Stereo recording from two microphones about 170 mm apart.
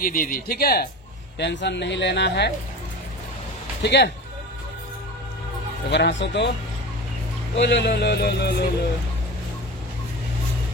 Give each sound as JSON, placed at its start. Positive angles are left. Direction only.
{"t": 0.0, "sound": "speech", "side_deg": 55}
{"t": 1.4, "sound": "speech", "side_deg": 90}
{"t": 3.8, "sound": "speech", "side_deg": 85}
{"t": 5.9, "sound": "speech", "side_deg": 90}
{"t": 7.5, "sound": "speech", "side_deg": 85}